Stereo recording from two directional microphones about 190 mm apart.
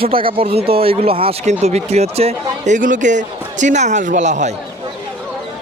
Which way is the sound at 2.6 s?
45° right (ahead or behind).